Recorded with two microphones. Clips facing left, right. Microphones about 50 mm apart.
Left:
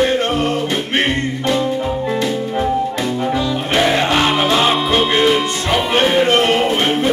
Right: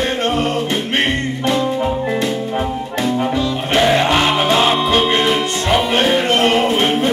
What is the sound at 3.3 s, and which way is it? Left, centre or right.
Music, centre.